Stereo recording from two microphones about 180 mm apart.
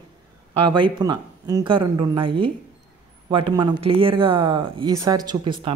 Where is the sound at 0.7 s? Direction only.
25° right (ahead or behind).